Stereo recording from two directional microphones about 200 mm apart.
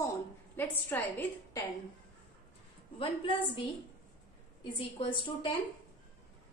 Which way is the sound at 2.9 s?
25° left (ahead or behind).